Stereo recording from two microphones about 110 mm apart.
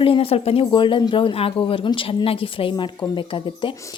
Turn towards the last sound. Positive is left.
turn(degrees=50)  # may be behind; listen again after turning